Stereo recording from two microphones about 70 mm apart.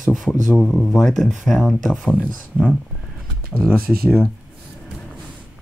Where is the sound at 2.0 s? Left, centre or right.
Centre.